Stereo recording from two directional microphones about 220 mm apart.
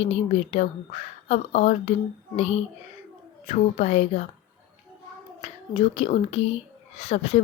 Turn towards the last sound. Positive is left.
turn(degrees=30)  # may be behind; listen again after turning